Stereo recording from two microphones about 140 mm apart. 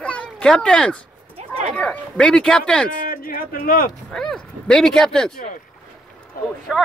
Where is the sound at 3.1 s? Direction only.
90° left.